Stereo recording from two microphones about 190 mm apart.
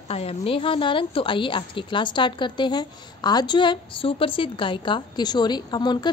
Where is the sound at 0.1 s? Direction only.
35° left (ahead or behind).